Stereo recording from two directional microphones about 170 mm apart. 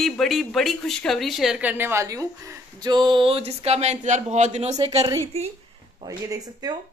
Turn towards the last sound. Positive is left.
turn(degrees=-20)  # may be behind; listen again after turning